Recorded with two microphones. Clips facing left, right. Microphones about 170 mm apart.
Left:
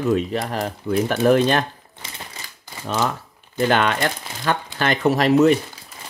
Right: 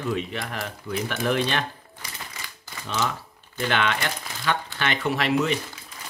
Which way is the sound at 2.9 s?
50° left (ahead or behind).